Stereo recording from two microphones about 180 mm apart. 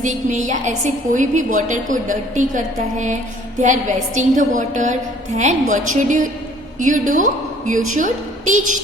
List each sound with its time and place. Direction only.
0.0 s a woman's voice: 40° right (ahead or behind)